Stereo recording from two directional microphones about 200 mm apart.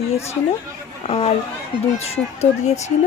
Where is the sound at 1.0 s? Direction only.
30° left (ahead or behind).